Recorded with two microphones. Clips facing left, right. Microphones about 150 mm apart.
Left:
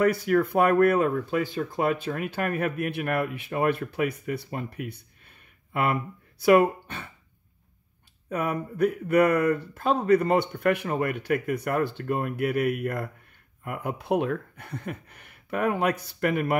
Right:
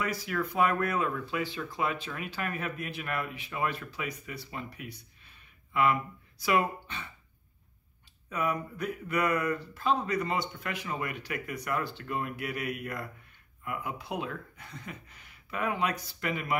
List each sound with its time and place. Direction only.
0.0 s speech: 55° left (ahead or behind)
8.3 s speech: 55° left (ahead or behind)